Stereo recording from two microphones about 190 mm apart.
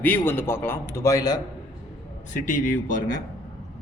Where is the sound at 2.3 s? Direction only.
45° left (ahead or behind).